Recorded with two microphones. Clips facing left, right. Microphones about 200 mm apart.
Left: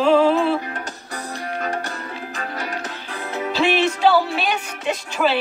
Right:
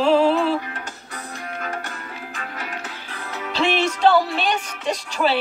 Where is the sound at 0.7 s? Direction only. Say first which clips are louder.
Left 4 dB; 40° left (ahead or behind).